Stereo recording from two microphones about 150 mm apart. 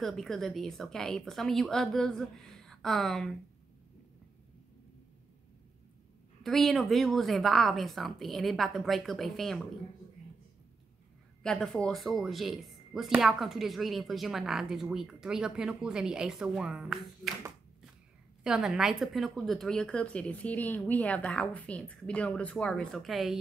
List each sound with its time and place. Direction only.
0.0 s speech: centre (ahead or behind)
6.4 s speech: centre (ahead or behind)
11.4 s speech: 5° left (ahead or behind)
18.4 s a woman's voice: 5° right (ahead or behind)